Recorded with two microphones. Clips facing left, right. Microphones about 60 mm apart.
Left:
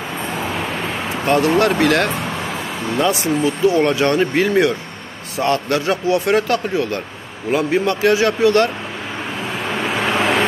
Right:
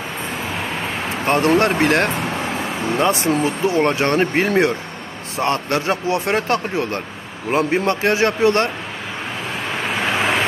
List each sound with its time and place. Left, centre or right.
1.2 s speech: right
10.0 s vehicle: centre